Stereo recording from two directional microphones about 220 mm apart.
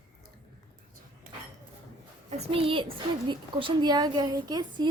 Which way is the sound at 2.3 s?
25° right (ahead or behind).